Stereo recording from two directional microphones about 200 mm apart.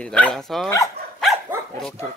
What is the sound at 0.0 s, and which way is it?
Cutlery, 5° left (ahead or behind).